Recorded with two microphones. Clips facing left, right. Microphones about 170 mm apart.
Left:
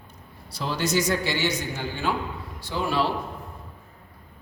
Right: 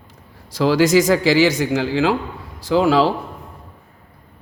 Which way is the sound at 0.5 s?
90° right.